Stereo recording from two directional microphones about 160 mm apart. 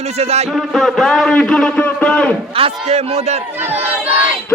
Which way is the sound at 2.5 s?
40° right (ahead or behind).